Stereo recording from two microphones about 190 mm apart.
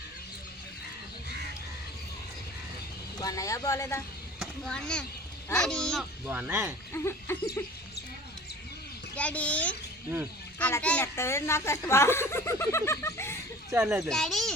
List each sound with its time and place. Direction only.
3.2 s a child's voice: 20° left (ahead or behind)
4.4 s speech: centre (ahead or behind)
6.2 s speech: 10° right (ahead or behind)
6.9 s a child's voice: 15° left (ahead or behind)
9.1 s a child's voice: 5° left (ahead or behind)
13.8 s speech: centre (ahead or behind)